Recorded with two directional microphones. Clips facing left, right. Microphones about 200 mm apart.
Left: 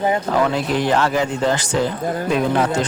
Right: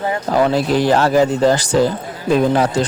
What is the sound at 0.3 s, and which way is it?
A man's voice, 35° right (ahead or behind).